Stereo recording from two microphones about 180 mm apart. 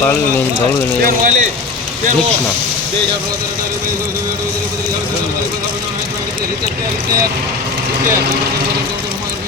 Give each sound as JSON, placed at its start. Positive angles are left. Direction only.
{"t": 1.0, "sound": "speech", "side_deg": -45}